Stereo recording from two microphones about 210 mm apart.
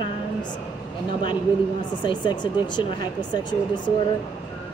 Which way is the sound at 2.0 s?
20° left (ahead or behind).